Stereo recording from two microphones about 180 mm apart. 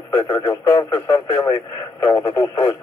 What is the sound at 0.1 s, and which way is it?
Speech, 20° left (ahead or behind).